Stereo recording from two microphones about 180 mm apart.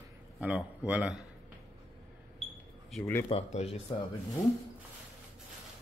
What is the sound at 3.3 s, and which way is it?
Speech, 35° left (ahead or behind).